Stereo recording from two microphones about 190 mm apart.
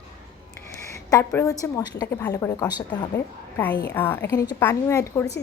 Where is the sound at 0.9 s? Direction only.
15° left (ahead or behind).